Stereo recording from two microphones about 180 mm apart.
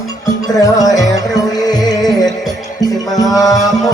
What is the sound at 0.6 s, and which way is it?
Music, 20° left (ahead or behind).